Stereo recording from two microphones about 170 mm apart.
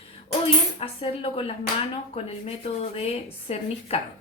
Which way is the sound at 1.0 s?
35° left (ahead or behind).